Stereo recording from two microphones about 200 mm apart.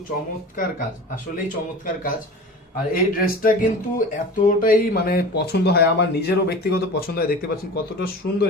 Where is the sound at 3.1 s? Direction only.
45° left (ahead or behind).